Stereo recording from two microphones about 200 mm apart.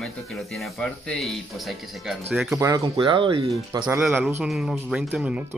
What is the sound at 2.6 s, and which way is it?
Speech, 15° right (ahead or behind).